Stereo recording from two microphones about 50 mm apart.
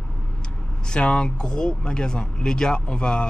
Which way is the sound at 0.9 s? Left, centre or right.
Centre.